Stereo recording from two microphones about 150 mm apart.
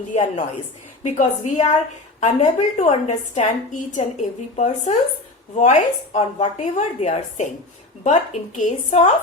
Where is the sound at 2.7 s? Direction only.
50° left (ahead or behind).